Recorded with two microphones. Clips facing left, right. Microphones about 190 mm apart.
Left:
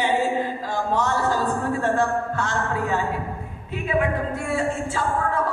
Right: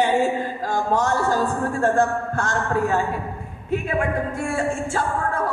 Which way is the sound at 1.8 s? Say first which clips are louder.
Right 4 dB; 45° right (ahead or behind).